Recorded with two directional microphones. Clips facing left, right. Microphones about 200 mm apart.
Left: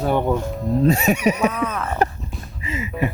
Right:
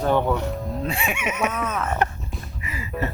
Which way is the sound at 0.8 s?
40° left (ahead or behind).